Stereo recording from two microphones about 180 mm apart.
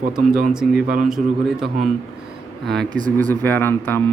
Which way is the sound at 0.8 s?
50° right (ahead or behind).